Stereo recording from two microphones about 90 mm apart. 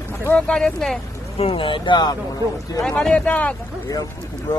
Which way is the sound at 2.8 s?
10° left (ahead or behind).